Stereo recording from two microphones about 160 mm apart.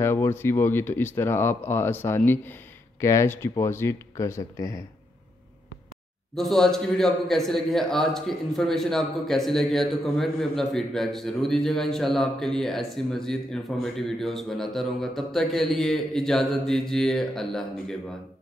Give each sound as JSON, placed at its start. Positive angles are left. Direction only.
{"t": 0.0, "sound": "speech", "side_deg": 15}
{"t": 6.3, "sound": "a man's voice", "side_deg": 0}